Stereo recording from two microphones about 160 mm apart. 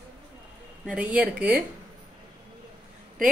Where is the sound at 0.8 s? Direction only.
10° right (ahead or behind).